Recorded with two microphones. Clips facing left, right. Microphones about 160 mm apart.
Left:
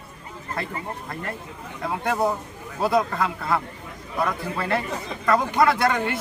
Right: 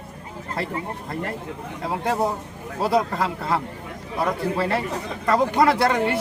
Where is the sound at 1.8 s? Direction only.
30° right (ahead or behind).